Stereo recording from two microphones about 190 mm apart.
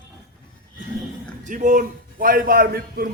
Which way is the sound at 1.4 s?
40° right (ahead or behind).